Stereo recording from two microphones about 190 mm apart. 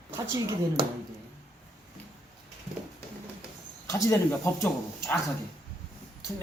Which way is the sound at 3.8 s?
15° left (ahead or behind).